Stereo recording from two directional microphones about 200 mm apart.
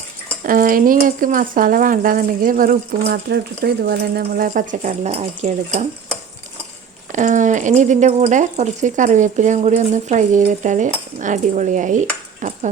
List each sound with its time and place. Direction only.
0.4 s speech: 45° right (ahead or behind)
7.1 s speech: 40° right (ahead or behind)